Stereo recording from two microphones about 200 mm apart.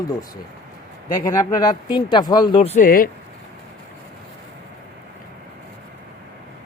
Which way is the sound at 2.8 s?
45° left (ahead or behind).